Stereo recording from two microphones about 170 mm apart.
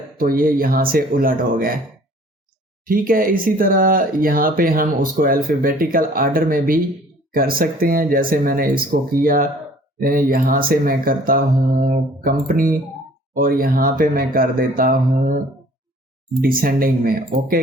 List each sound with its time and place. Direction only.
0.2 s speech: 55° right (ahead or behind)
2.8 s speech: 55° right (ahead or behind)
16.4 s speech: 55° right (ahead or behind)